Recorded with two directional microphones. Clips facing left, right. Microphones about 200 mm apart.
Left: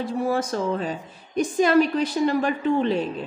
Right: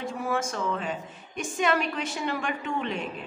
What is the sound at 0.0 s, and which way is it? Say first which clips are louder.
A woman's voice: left 5 dB; 35° left (ahead or behind).